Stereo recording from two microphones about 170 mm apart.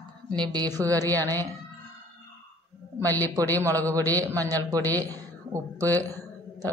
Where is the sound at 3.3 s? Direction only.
20° right (ahead or behind).